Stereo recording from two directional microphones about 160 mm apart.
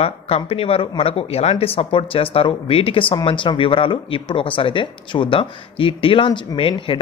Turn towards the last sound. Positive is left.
turn(degrees=35)  # may be behind; listen again after turning